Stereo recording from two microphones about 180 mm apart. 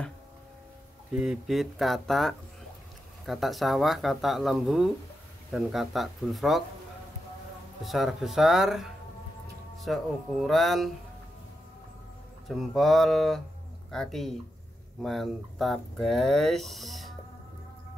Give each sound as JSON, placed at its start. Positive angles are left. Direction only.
{"t": 1.1, "sound": "speech", "side_deg": -5}
{"t": 7.8, "sound": "speech", "side_deg": 0}
{"t": 12.4, "sound": "speech", "side_deg": 0}